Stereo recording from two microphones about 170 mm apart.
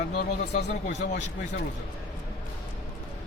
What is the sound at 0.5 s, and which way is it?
Speech, 45° left (ahead or behind).